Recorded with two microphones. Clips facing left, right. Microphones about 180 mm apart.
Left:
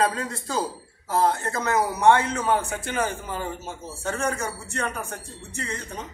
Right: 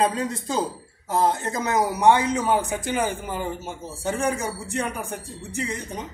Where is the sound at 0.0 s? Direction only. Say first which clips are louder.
Right 2 dB; 20° right (ahead or behind).